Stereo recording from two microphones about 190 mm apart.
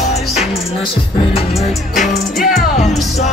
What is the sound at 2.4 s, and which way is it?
Music, 40° left (ahead or behind).